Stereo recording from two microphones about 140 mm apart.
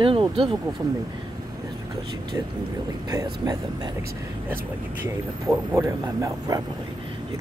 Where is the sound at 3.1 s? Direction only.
25° right (ahead or behind).